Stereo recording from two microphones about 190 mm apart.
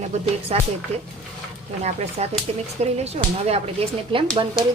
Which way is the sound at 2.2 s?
35° right (ahead or behind).